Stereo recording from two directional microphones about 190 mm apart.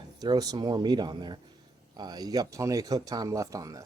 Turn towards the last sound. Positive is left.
turn(degrees=-20)  # may be behind; listen again after turning